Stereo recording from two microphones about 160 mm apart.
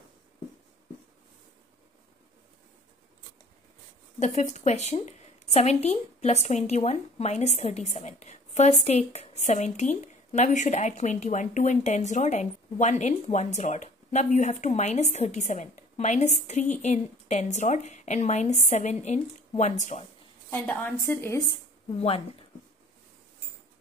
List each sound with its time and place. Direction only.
4.2 s a woman's voice: 45° left (ahead or behind)
20.4 s a woman's voice: 15° left (ahead or behind)